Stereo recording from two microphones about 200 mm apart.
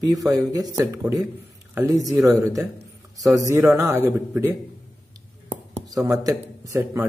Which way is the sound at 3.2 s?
15° right (ahead or behind).